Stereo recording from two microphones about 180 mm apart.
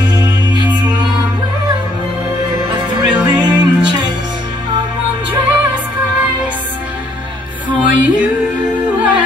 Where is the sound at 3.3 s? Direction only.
25° right (ahead or behind).